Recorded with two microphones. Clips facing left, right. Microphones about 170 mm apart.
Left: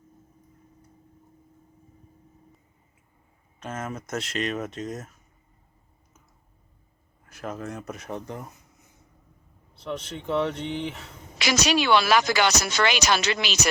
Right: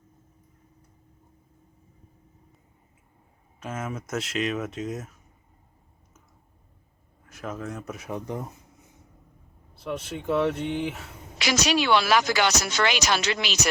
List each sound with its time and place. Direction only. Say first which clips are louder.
3.6 s speech: even; 5° right (ahead or behind)
7.3 s speech: even; centre (ahead or behind)
9.7 s speech: right 1 dB; 5° right (ahead or behind)
11.3 s speech: left 1 dB; 80° left